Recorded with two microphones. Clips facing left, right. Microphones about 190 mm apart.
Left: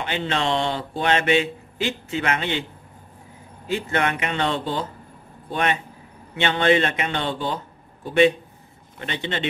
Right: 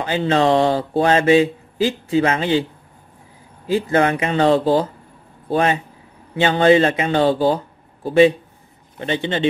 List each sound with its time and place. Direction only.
0.0 s speech: 35° right (ahead or behind)
3.7 s speech: 30° right (ahead or behind)